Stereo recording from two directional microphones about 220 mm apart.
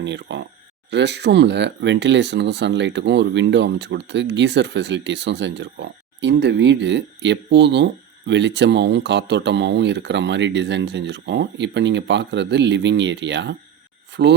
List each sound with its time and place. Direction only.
0.0 s speech: 50° right (ahead or behind)